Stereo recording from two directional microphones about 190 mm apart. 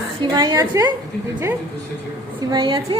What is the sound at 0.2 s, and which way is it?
Speech, 20° right (ahead or behind).